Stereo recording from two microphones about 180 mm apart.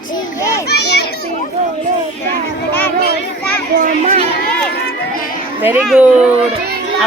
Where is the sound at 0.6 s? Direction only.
65° left (ahead or behind).